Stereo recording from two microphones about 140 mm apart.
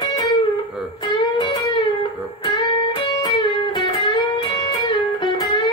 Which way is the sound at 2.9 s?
35° left (ahead or behind).